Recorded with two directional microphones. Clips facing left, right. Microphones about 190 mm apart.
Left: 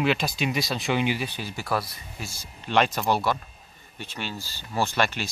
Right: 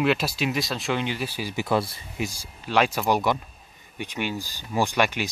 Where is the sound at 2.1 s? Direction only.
15° right (ahead or behind).